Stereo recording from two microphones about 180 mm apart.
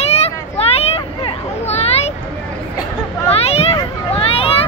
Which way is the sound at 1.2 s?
35° left (ahead or behind).